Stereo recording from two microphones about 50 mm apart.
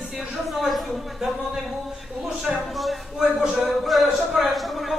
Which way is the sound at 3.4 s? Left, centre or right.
Centre.